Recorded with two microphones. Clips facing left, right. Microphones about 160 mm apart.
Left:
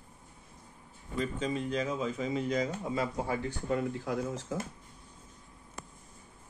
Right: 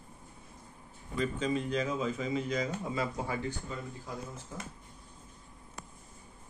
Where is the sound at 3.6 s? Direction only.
70° left (ahead or behind); by 4.6 s 90° left.